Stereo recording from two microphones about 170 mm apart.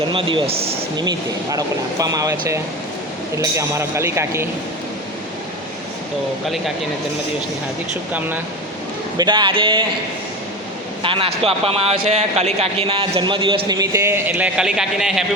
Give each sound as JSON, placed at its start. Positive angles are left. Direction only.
{"t": 0.1, "sound": "a man's voice", "side_deg": -30}
{"t": 9.1, "sound": "a man's voice", "side_deg": -25}
{"t": 11.0, "sound": "a man's voice", "side_deg": -30}